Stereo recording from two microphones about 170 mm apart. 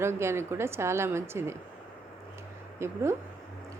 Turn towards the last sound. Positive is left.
turn(degrees=-15)  # may be behind; listen again after turning